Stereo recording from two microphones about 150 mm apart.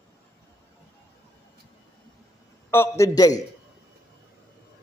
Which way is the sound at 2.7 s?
20° left (ahead or behind).